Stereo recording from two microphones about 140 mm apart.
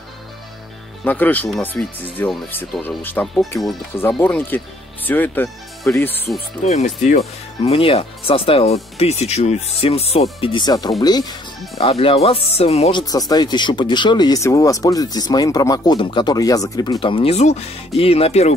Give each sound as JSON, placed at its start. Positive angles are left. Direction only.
{"t": 1.0, "sound": "speech", "side_deg": 10}
{"t": 6.6, "sound": "speech", "side_deg": 50}
{"t": 11.8, "sound": "speech", "side_deg": 45}
{"t": 13.3, "sound": "speech", "side_deg": 30}
{"t": 17.0, "sound": "speech", "side_deg": 40}